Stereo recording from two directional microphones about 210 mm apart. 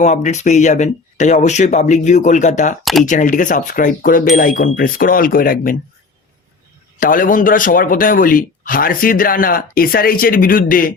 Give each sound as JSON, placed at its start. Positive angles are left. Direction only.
{"t": 0.0, "sound": "speech", "side_deg": 35}
{"t": 2.8, "sound": "speech", "side_deg": 0}
{"t": 3.1, "sound": "speech", "side_deg": 40}
{"t": 7.0, "sound": "speech", "side_deg": 40}